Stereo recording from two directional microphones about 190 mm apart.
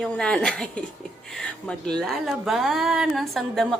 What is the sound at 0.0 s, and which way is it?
Speech, 5° left (ahead or behind).